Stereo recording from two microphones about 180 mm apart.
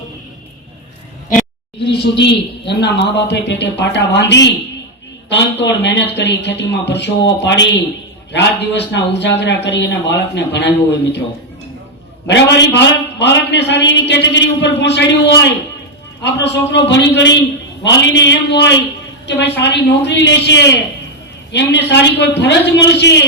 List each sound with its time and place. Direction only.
1.9 s a man's voice: 75° left (ahead or behind)
12.3 s a man's voice: 75° left (ahead or behind)